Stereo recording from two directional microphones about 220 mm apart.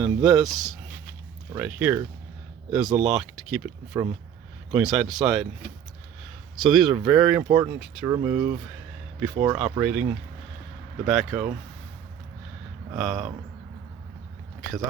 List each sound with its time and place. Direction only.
0.0 s speech: 20° right (ahead or behind)
0.3 s speech: centre (ahead or behind)
1.5 s speech: 10° right (ahead or behind)
3.9 s speech: 15° right (ahead or behind)
4.7 s speech: centre (ahead or behind)
6.6 s speech: centre (ahead or behind)
6.9 s speech: 20° right (ahead or behind)
7.2 s speech: 5° right (ahead or behind)
7.4 s speech: 20° right (ahead or behind); by 11.5 s centre (ahead or behind)
13.0 s speech: centre (ahead or behind)